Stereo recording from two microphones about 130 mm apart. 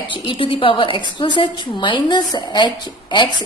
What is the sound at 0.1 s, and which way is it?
A woman's voice, 40° left (ahead or behind).